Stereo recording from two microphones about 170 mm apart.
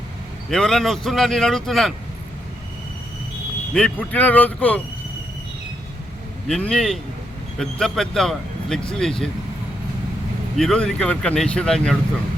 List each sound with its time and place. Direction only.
0.5 s speech: 5° left (ahead or behind)
3.8 s speech: 5° left (ahead or behind)
6.5 s speech: 5° left (ahead or behind)
10.6 s speech: 5° left (ahead or behind)